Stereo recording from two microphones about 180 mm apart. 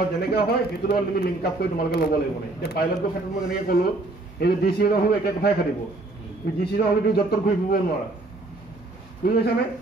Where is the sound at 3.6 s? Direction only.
60° left (ahead or behind).